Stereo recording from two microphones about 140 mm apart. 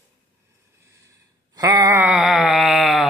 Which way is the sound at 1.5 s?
25° right (ahead or behind).